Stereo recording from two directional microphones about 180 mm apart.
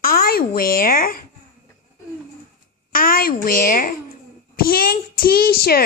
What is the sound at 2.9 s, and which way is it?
A woman's voice, 50° left (ahead or behind).